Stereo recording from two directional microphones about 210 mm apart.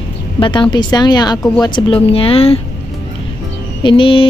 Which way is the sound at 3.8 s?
25° left (ahead or behind).